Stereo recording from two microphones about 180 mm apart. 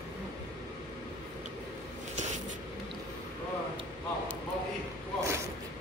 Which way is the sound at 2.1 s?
40° right (ahead or behind).